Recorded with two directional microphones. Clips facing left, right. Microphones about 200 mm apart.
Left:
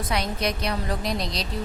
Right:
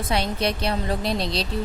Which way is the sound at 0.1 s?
30° right (ahead or behind).